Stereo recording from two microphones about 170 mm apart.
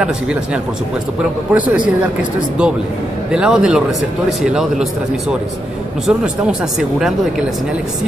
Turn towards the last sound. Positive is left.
turn(degrees=-5)  # may be behind; listen again after turning